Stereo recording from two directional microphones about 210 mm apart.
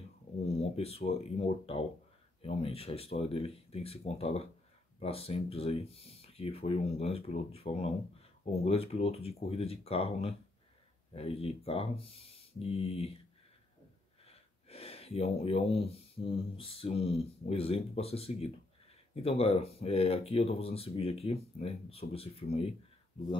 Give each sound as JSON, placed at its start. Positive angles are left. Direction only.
{"t": 0.6, "sound": "speech", "side_deg": 30}
{"t": 14.2, "sound": "speech", "side_deg": 30}